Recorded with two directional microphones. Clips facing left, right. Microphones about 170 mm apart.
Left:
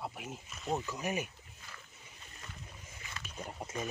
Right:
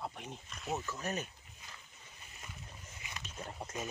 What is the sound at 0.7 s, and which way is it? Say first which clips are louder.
Speech: left 3 dB; 15° left (ahead or behind).